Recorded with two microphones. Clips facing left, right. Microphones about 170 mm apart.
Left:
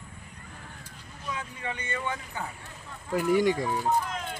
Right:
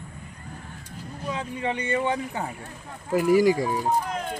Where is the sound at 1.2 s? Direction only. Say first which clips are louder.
Right 7 dB; 25° right (ahead or behind).